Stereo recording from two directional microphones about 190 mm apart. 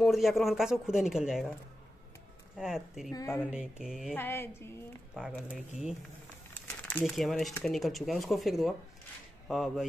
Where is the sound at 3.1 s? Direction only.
20° left (ahead or behind).